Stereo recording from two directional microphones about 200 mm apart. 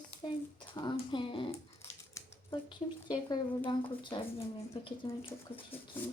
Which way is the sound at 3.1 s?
20° left (ahead or behind).